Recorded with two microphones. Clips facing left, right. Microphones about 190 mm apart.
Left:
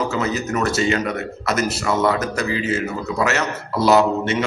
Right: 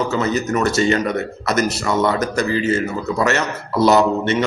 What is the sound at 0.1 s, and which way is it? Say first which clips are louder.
A man's voice: right 3 dB; 10° left (ahead or behind).